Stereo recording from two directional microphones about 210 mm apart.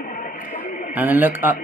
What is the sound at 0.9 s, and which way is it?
Speech, 10° right (ahead or behind).